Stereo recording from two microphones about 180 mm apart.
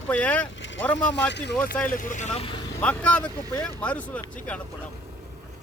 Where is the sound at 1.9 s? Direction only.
45° left (ahead or behind).